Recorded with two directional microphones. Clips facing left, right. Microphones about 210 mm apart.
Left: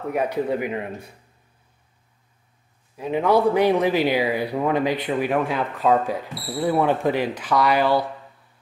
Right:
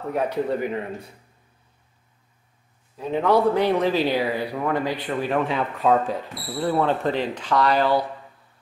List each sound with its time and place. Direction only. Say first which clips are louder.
0.1 s speech: left 1 dB; 10° left (ahead or behind)
3.0 s speech: left 1 dB; 10° left (ahead or behind)